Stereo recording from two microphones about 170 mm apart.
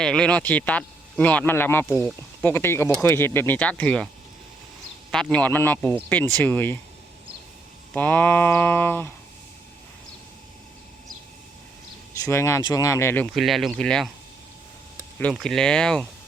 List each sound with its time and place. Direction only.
0.0 s speech: 5° left (ahead or behind)
5.1 s speech: 5° left (ahead or behind)
7.9 s speech: 10° left (ahead or behind)
12.2 s speech: 15° left (ahead or behind)
13.3 s speech: centre (ahead or behind)
15.2 s speech: 5° left (ahead or behind)